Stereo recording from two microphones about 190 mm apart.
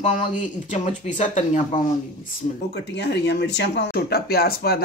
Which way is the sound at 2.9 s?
65° left (ahead or behind).